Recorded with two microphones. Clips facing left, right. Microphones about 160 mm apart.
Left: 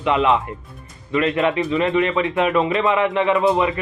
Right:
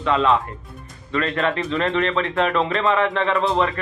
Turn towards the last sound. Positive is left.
turn(degrees=10)  # may be behind; listen again after turning